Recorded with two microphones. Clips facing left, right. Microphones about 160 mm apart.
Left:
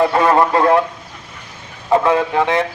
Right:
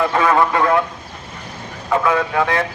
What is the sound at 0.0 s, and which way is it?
Speech, 35° left (ahead or behind).